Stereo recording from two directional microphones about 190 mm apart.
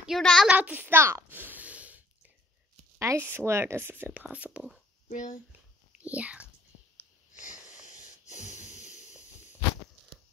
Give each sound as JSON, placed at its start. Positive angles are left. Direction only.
{"t": 0.0, "sound": "a sound", "side_deg": 0}
{"t": 3.0, "sound": "speech", "side_deg": -15}
{"t": 5.1, "sound": "speech", "side_deg": 45}
{"t": 5.9, "sound": "a child's voice", "side_deg": -5}
{"t": 8.0, "sound": "wheeze", "side_deg": 40}